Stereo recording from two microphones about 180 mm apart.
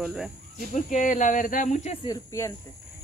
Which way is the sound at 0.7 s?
45° left (ahead or behind).